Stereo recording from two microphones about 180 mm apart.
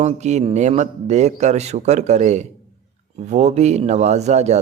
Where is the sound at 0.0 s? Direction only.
40° right (ahead or behind).